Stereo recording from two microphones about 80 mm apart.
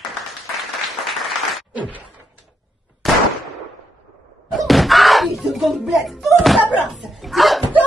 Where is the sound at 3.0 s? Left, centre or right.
Centre.